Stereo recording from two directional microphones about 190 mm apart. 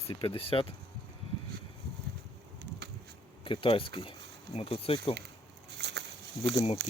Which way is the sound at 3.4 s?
25° left (ahead or behind).